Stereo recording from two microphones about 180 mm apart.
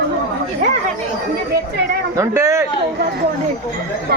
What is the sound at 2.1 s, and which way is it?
Speech, 15° right (ahead or behind).